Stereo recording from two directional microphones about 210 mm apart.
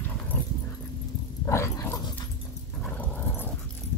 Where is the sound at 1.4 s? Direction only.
15° left (ahead or behind).